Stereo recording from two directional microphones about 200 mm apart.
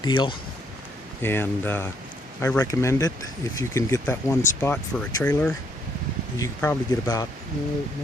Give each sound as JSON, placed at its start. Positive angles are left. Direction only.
{"t": 0.0, "sound": "speech", "side_deg": 25}
{"t": 1.2, "sound": "speech", "side_deg": 10}